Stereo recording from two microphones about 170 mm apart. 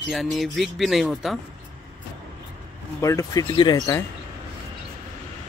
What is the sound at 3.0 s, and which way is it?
Speech, 20° left (ahead or behind).